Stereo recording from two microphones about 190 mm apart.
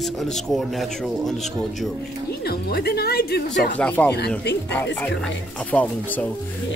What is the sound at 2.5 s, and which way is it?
Speech, 55° left (ahead or behind).